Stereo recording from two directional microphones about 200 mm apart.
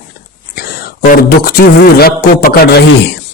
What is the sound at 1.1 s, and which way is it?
A man's voice, 45° left (ahead or behind).